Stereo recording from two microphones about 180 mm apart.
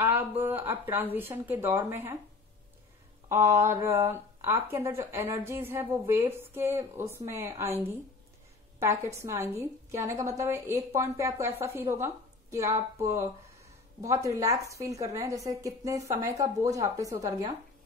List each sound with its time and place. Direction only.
0.0 s a woman's voice: 10° right (ahead or behind)
3.3 s a woman's voice: 15° right (ahead or behind)